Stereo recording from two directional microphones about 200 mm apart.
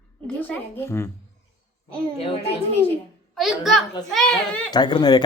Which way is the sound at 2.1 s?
30° left (ahead or behind).